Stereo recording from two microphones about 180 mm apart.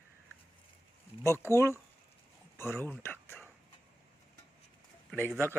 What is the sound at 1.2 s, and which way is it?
Speech, 15° left (ahead or behind).